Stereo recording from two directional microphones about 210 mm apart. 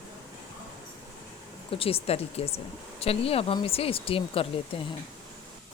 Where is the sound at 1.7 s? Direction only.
25° left (ahead or behind).